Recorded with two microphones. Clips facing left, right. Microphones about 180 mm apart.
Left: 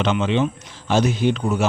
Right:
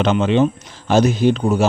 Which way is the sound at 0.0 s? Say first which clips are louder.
Right 5 dB; 40° right (ahead or behind).